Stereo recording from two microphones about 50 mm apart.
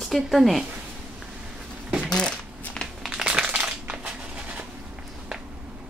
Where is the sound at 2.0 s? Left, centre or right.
Centre.